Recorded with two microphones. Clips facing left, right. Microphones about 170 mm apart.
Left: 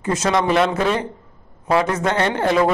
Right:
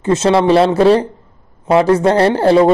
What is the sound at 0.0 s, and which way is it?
Speech, 25° right (ahead or behind).